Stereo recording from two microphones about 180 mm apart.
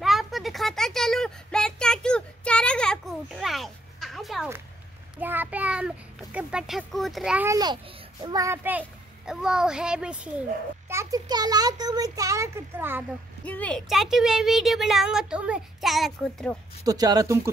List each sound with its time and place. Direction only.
0.0 s a sound: centre (ahead or behind)
5.2 s child singing: 10° right (ahead or behind)
7.4 s a child's voice: 20° right (ahead or behind); by 10.3 s 5° right (ahead or behind)
10.9 s a child's voice: 15° right (ahead or behind)
13.5 s speech: 10° left (ahead or behind)
16.8 s a child's voice: 20° right (ahead or behind)